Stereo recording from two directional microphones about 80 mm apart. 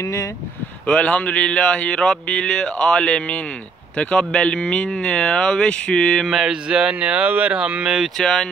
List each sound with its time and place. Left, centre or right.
0.0 s speech: left
0.8 s speech: centre
6.2 s speech: centre
8.2 s speech: centre